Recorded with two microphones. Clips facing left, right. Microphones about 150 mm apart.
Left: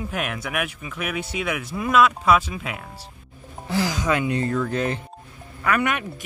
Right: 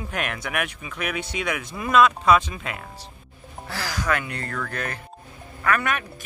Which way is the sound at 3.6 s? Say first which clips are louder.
Left 4 dB; 20° left (ahead or behind).